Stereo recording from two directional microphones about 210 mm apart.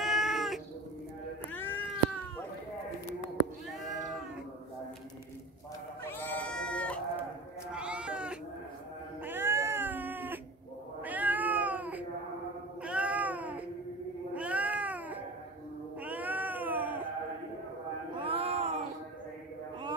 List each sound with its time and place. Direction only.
0.0 s cat: centre (ahead or behind)
1.5 s cat: 10° left (ahead or behind)
6.0 s goat: 10° left (ahead or behind)
7.7 s sheep: 5° right (ahead or behind)
9.2 s cat: 10° right (ahead or behind)
18.2 s a sound: 25° right (ahead or behind)